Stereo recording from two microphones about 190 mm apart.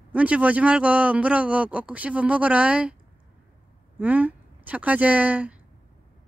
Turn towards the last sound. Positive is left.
turn(degrees=-10)  # may be behind; listen again after turning